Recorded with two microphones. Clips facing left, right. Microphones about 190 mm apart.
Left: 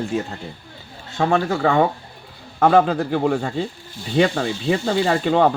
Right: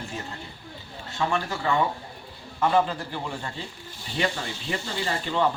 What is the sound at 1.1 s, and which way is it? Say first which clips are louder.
Speech: left 8 dB; 90° left.